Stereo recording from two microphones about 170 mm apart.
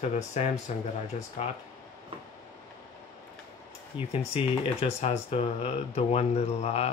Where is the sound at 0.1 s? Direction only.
40° left (ahead or behind).